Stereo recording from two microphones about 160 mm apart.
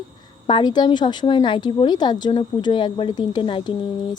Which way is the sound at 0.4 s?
30° left (ahead or behind).